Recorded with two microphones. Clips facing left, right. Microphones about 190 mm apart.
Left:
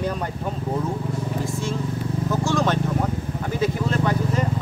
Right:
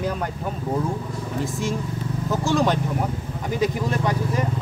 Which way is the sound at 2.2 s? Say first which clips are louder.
Right 2 dB; 15° right (ahead or behind).